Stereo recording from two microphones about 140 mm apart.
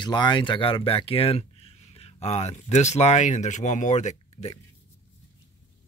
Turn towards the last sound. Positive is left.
turn(degrees=45)  # may be behind; listen again after turning